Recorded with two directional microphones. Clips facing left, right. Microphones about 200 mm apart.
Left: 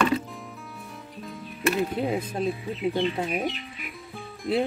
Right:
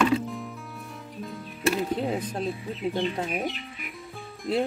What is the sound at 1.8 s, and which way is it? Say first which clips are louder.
Speech: left 1 dB; 10° left (ahead or behind).